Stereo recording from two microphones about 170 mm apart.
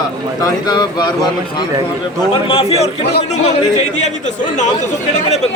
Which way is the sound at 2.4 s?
35° left (ahead or behind).